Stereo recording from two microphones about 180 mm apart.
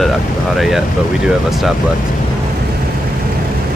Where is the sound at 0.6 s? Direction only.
Centre (ahead or behind).